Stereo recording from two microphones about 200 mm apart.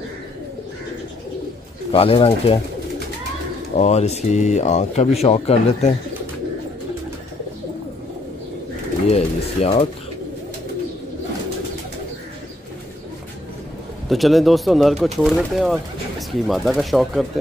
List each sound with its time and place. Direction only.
1.9 s speech: 30° left (ahead or behind)
3.7 s speech: 35° left (ahead or behind)
9.1 s speech: 30° left (ahead or behind)
14.0 s speech: centre (ahead or behind)